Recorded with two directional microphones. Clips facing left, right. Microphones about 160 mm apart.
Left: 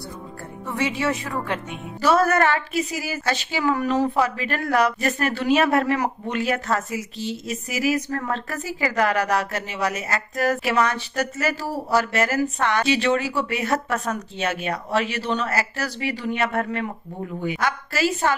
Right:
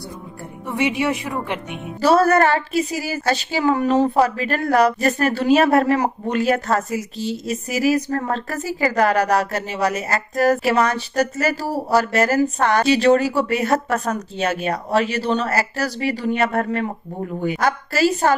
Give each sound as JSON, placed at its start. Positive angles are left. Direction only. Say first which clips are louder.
{"t": 0.7, "sound": "a woman's voice", "louder": "right 3 dB", "side_deg": -15}
{"t": 2.0, "sound": "a woman's voice", "louder": "right 4 dB", "side_deg": -30}